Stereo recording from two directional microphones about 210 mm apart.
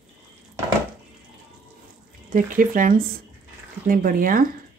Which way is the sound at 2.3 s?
40° right (ahead or behind).